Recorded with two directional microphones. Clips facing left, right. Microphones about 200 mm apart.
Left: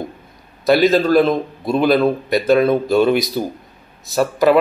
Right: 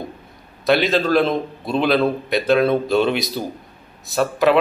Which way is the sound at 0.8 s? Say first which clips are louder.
Left 4 dB; centre (ahead or behind).